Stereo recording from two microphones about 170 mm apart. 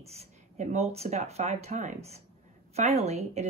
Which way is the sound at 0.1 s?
40° right (ahead or behind).